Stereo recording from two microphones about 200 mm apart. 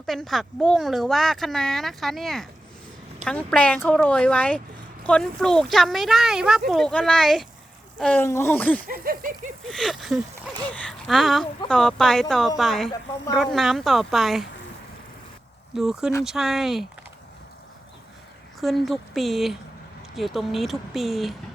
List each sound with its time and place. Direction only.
0.0 s speech: centre (ahead or behind)
8.9 s a sound: 45° right (ahead or behind)
9.6 s speech: centre (ahead or behind)
15.7 s speech: centre (ahead or behind)
18.6 s speech: centre (ahead or behind)